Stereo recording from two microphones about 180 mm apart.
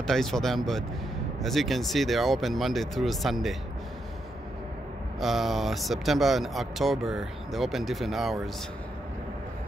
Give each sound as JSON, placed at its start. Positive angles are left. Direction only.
{"t": 0.0, "sound": "speech", "side_deg": 0}
{"t": 5.2, "sound": "speech", "side_deg": 0}